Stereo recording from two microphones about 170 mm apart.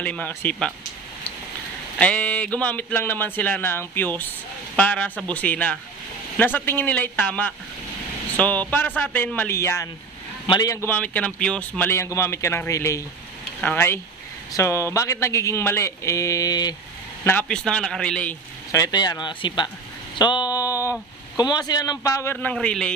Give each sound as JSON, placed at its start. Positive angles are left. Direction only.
{"t": 0.0, "sound": "a man's voice", "side_deg": 10}
{"t": 2.0, "sound": "a man's voice", "side_deg": 10}
{"t": 17.2, "sound": "a man's voice", "side_deg": 10}
{"t": 18.7, "sound": "speech", "side_deg": 20}